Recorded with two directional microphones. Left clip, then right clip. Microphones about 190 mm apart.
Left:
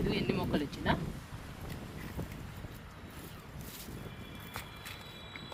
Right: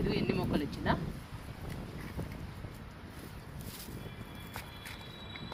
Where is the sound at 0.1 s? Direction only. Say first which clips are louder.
Even; 25° left (ahead or behind).